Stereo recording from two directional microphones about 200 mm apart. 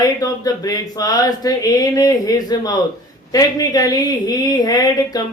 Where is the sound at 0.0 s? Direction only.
20° left (ahead or behind).